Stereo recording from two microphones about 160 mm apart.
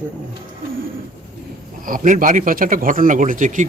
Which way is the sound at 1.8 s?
55° right (ahead or behind).